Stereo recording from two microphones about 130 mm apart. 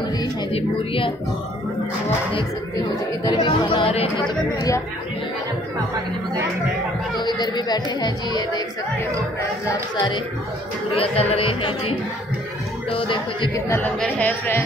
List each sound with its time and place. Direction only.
0.5 s speech: 45° left (ahead or behind)
3.3 s music: 35° left (ahead or behind)
7.2 s music: 35° left (ahead or behind)
9.9 s music: 35° left (ahead or behind)
11.0 s speech: 50° left (ahead or behind)
12.9 s music: 40° left (ahead or behind)
13.7 s speech: 15° left (ahead or behind)